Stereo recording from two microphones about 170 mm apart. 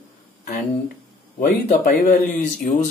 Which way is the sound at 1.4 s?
55° left (ahead or behind).